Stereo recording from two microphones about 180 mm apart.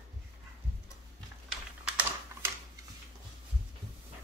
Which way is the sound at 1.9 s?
5° right (ahead or behind).